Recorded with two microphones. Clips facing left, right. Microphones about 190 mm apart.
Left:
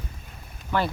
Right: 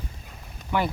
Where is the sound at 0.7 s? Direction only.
15° right (ahead or behind).